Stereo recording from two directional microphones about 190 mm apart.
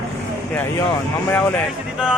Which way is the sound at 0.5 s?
10° left (ahead or behind).